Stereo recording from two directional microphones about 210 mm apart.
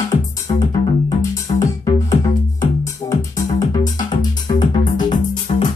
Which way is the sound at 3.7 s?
35° left (ahead or behind).